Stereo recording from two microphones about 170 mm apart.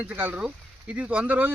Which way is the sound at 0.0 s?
10° right (ahead or behind).